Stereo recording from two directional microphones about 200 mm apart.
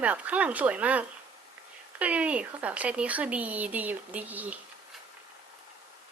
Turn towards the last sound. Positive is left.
turn(degrees=-10)  # may be behind; listen again after turning